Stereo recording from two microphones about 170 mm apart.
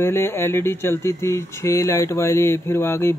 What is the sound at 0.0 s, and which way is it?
Speech, 15° left (ahead or behind).